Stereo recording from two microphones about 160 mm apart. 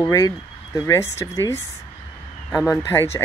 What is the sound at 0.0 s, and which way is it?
Speech, 20° left (ahead or behind).